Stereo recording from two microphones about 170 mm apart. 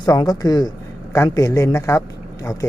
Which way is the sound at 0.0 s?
25° left (ahead or behind).